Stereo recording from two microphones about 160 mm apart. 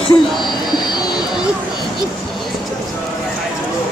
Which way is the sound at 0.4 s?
25° left (ahead or behind).